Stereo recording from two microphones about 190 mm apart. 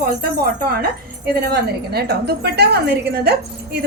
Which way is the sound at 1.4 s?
55° right (ahead or behind).